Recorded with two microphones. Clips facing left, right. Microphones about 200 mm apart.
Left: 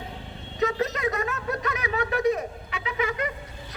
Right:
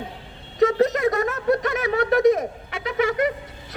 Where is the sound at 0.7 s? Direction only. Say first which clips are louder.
Right 7 dB; 40° right (ahead or behind).